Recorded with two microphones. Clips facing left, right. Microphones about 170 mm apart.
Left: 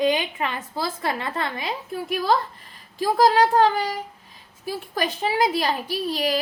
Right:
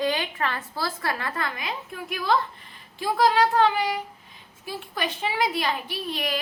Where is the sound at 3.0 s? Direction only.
40° left (ahead or behind).